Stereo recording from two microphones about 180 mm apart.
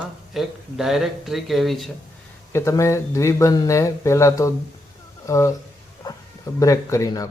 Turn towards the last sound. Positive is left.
turn(degrees=20)  # may be behind; listen again after turning